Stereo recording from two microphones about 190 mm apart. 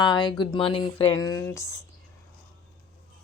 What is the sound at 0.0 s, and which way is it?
Speech, 25° left (ahead or behind).